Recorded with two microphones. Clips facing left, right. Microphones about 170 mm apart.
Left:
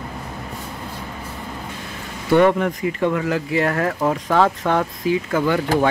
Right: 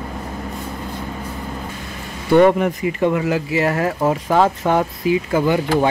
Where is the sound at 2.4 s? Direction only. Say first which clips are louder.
Right 3 dB; 15° right (ahead or behind).